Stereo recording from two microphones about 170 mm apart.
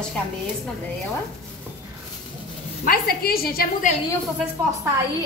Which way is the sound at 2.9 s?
65° left (ahead or behind).